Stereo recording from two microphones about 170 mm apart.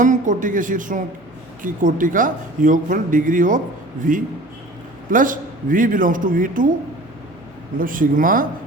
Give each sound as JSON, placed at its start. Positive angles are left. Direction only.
{"t": 0.0, "sound": "speech", "side_deg": -50}
{"t": 7.8, "sound": "speech", "side_deg": -55}